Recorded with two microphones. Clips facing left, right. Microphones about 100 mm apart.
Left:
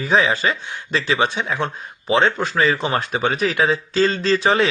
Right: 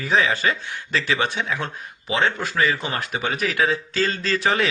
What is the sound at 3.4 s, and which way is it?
Speech, 20° left (ahead or behind).